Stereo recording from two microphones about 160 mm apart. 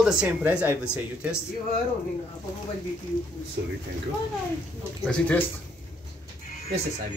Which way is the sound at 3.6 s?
90° right.